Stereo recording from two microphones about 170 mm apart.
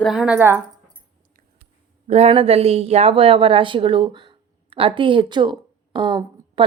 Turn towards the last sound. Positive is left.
turn(degrees=-25)  # may be behind; listen again after turning